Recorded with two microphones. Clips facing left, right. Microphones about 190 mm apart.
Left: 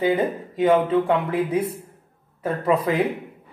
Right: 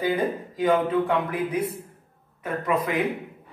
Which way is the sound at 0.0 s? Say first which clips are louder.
Left 3 dB; 25° left (ahead or behind).